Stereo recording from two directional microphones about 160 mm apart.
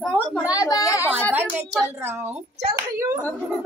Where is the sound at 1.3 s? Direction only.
10° right (ahead or behind).